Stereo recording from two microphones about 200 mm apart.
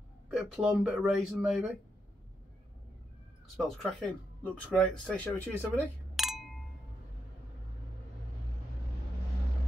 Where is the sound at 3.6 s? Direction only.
Centre (ahead or behind).